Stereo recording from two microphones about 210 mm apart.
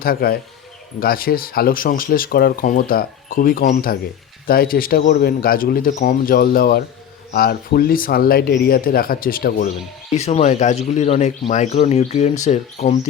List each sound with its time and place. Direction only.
0.0 s speech: 45° left (ahead or behind)
10.2 s speech: 30° left (ahead or behind)